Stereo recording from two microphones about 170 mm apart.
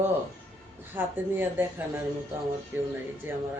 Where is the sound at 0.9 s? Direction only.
10° right (ahead or behind).